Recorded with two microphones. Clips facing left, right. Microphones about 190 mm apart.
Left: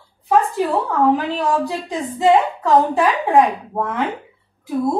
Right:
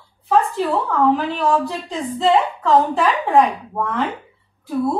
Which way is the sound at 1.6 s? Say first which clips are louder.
Left 1 dB; 15° left (ahead or behind).